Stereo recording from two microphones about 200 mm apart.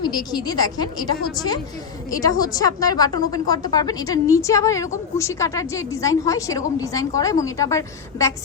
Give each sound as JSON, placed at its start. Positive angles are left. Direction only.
{"t": 0.0, "sound": "a woman's voice", "side_deg": 20}